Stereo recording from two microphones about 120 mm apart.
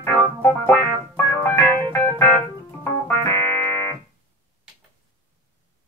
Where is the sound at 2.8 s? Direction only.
25° left (ahead or behind).